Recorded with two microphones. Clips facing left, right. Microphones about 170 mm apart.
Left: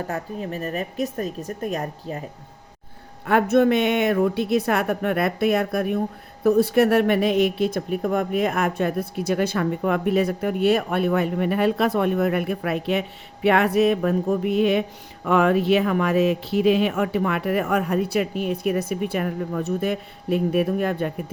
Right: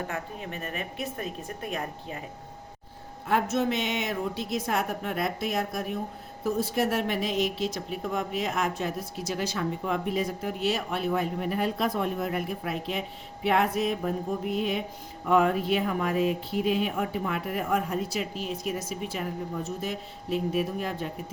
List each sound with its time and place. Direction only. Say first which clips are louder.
0.1 s a woman's voice: left 7 dB; 40° left (ahead or behind)
3.2 s speech: left 8 dB; 60° left (ahead or behind)